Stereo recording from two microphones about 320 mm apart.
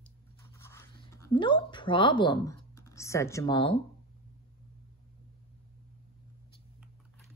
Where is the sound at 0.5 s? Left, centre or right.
Centre.